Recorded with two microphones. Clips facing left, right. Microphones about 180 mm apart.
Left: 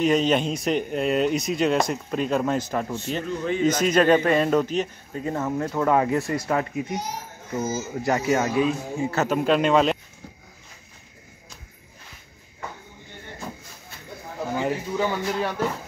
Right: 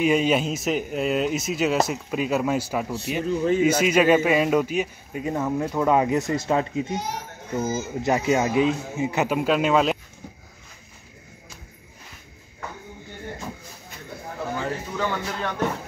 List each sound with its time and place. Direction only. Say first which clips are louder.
0.0 s speech: even; 10° right (ahead or behind)
14.6 s speech: left 5 dB; 15° left (ahead or behind)